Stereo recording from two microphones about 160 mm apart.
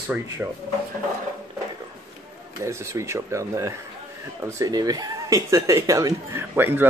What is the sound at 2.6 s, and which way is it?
Speech, 15° right (ahead or behind).